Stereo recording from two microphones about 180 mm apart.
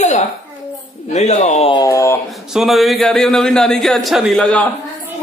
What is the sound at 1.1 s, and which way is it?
Speech, 40° left (ahead or behind).